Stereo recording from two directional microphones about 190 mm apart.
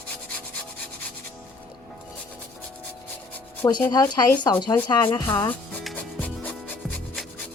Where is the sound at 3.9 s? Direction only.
20° left (ahead or behind).